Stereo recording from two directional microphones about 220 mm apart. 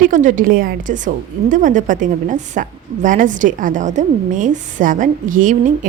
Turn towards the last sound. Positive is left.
turn(degrees=-35)  # may be behind; listen again after turning